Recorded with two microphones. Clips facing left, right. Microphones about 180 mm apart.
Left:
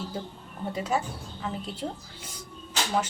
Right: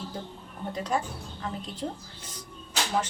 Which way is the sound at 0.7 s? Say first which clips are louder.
Left 1 dB; 10° left (ahead or behind).